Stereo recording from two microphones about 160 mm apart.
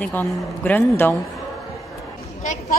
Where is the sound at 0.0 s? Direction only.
10° left (ahead or behind).